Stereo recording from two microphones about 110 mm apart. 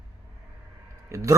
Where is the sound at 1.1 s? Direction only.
30° right (ahead or behind).